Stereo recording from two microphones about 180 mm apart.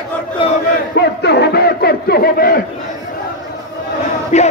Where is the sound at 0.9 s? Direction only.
65° left (ahead or behind).